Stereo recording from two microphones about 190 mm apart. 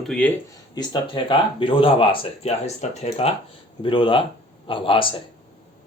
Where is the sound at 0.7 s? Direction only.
25° left (ahead or behind).